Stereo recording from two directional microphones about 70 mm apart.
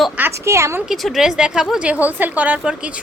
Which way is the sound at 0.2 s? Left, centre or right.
Right.